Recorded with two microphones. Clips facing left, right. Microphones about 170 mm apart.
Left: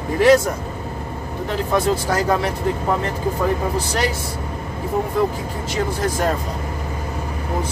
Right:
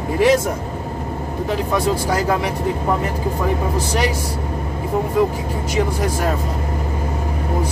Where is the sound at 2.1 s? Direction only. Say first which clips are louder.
Even; 10° right (ahead or behind).